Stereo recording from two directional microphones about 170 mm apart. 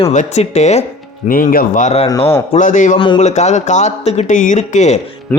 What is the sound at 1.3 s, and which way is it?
Speech, 55° left (ahead or behind).